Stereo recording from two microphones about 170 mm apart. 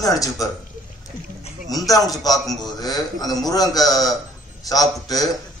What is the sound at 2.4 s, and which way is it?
Speech, centre (ahead or behind).